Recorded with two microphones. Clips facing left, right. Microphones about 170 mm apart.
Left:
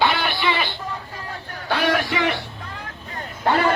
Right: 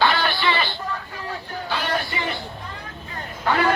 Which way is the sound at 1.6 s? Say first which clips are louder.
Left 6 dB; 75° left (ahead or behind).